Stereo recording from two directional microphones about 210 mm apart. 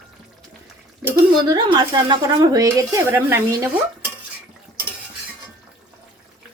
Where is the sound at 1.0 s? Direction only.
20° right (ahead or behind).